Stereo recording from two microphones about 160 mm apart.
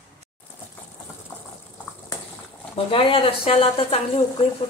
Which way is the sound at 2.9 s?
35° left (ahead or behind).